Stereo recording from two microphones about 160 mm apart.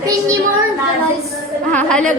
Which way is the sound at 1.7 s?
5° left (ahead or behind).